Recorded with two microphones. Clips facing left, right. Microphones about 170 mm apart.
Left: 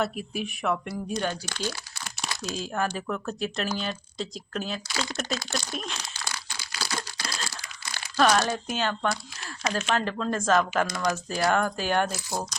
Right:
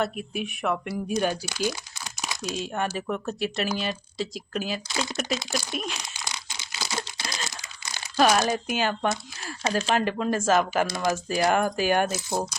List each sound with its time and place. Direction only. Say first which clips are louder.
0.0 s speech: right 1 dB; centre (ahead or behind)
5.4 s crumpling: right 2 dB; 15° right (ahead or behind)
9.6 s speech: right 3 dB; 30° right (ahead or behind)
9.9 s speech: right 2 dB; 10° right (ahead or behind)
10.8 s speech: right 2 dB; 25° right (ahead or behind)
11.5 s speech: right 2 dB; 15° right (ahead or behind)
12.0 s speech: right 4 dB; 20° right (ahead or behind)